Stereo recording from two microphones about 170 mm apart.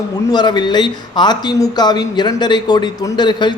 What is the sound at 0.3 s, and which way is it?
Speech, 25° left (ahead or behind).